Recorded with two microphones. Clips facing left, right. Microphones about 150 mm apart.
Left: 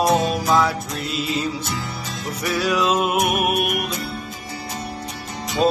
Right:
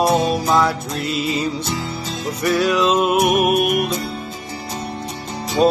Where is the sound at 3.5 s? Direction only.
45° right (ahead or behind).